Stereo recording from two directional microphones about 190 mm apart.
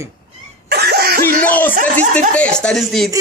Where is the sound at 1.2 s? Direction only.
10° left (ahead or behind).